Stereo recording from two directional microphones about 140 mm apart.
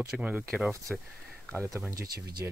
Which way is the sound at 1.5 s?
20° right (ahead or behind).